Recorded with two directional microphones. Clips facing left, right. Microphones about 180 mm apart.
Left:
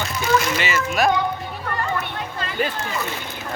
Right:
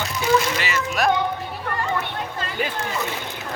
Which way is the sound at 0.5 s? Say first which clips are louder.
Left 2 dB; centre (ahead or behind).